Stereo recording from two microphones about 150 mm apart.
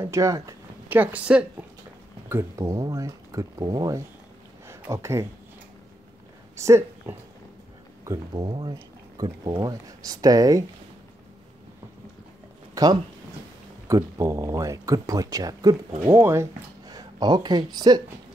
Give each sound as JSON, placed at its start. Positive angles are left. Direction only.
{"t": 0.0, "sound": "speech", "side_deg": -20}
{"t": 6.5, "sound": "speech", "side_deg": -20}
{"t": 12.7, "sound": "speech", "side_deg": -25}